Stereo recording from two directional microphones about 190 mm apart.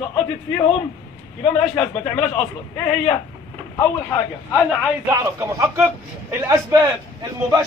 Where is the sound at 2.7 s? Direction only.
15° left (ahead or behind).